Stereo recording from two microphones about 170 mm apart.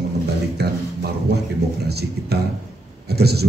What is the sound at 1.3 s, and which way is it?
A man's voice, 70° right (ahead or behind).